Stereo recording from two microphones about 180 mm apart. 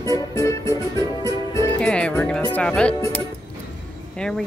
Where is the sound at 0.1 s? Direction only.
15° left (ahead or behind).